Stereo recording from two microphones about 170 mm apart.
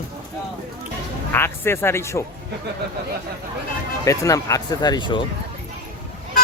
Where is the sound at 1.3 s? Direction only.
15° left (ahead or behind).